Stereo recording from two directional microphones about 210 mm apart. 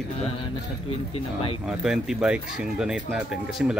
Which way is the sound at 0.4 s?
25° left (ahead or behind).